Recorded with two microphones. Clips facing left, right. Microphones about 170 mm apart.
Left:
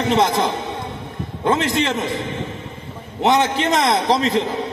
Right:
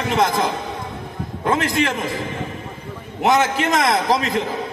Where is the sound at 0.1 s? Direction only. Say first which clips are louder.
Left 1 dB; 25° left (ahead or behind).